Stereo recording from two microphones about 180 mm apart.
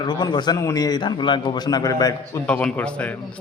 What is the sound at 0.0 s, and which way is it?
A man's voice, 25° left (ahead or behind).